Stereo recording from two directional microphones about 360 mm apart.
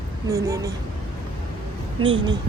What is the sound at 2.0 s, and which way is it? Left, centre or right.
Speech, centre.